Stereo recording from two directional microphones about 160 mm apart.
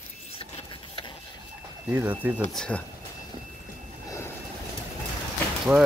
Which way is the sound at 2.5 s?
5° left (ahead or behind).